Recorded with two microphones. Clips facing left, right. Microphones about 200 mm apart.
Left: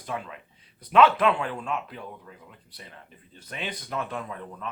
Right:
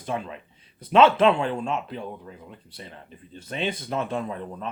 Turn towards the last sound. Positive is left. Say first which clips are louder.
# right 5 dB
turn(degrees=-30)  # may be behind; listen again after turning